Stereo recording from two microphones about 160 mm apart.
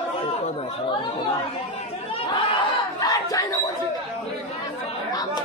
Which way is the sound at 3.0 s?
25° left (ahead or behind).